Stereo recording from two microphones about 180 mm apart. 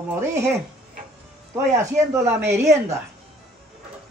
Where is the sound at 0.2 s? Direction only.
15° right (ahead or behind).